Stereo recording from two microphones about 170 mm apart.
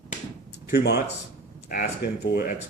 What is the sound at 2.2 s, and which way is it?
Speech, 70° left (ahead or behind).